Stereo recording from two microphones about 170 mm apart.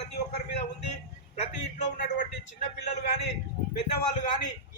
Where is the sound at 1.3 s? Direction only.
50° left (ahead or behind).